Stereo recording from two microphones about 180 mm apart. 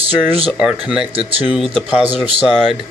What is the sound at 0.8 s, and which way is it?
Speech, 5° right (ahead or behind).